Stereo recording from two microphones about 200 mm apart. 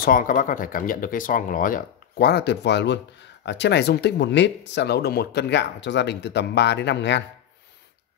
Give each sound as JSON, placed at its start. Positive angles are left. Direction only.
{"t": 0.0, "sound": "speech", "side_deg": 45}